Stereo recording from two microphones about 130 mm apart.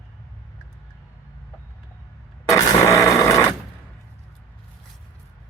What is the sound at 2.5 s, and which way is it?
Grunt, 25° left (ahead or behind).